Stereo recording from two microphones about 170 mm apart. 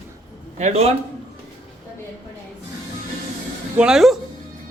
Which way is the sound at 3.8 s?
Centre (ahead or behind).